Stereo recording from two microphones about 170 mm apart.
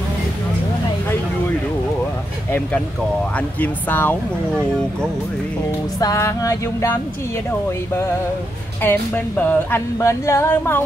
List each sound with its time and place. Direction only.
3.3 s speech: 10° left (ahead or behind)
5.9 s a sound: 20° left (ahead or behind)
7.9 s speech: 15° left (ahead or behind)